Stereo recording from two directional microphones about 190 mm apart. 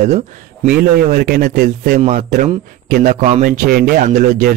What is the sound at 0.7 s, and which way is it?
A man's voice, 50° right (ahead or behind).